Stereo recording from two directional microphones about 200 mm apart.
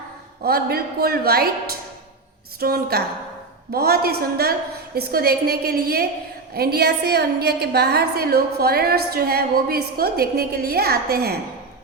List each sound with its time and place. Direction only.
0.4 s a woman's voice: 50° right (ahead or behind)
2.6 s a woman's voice: 50° right (ahead or behind)